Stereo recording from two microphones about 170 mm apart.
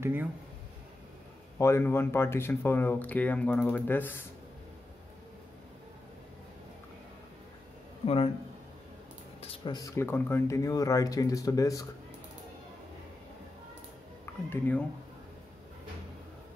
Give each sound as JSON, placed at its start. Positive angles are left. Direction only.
{"t": 0.0, "sound": "speech", "side_deg": -10}
{"t": 1.6, "sound": "speech", "side_deg": 15}
{"t": 9.4, "sound": "a sound", "side_deg": 35}
{"t": 9.8, "sound": "speech", "side_deg": 15}
{"t": 14.2, "sound": "speech", "side_deg": 15}